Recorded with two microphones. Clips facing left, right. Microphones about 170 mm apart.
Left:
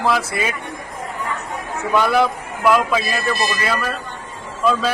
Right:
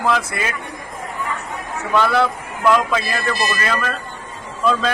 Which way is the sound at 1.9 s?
15° left (ahead or behind).